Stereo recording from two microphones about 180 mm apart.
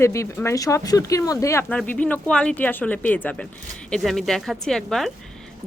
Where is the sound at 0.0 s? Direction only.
15° left (ahead or behind).